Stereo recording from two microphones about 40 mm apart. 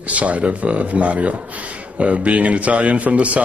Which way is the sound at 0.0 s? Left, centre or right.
Right.